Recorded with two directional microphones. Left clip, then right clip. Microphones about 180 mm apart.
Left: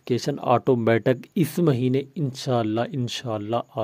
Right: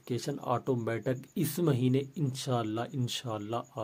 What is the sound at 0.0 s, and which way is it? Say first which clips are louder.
Speech: left 11 dB; 45° left (ahead or behind).